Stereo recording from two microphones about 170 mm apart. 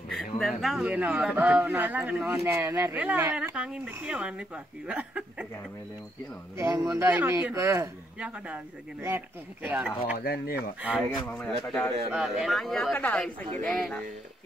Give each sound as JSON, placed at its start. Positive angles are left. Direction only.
{"t": 0.1, "sound": "speech", "side_deg": 0}
{"t": 6.6, "sound": "speech", "side_deg": -20}
{"t": 10.1, "sound": "speech", "side_deg": 65}
{"t": 10.5, "sound": "speech", "side_deg": -10}
{"t": 11.2, "sound": "speech", "side_deg": 10}
{"t": 12.1, "sound": "speech", "side_deg": -5}